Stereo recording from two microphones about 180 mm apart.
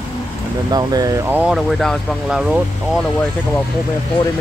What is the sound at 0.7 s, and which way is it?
Speech, 20° right (ahead or behind).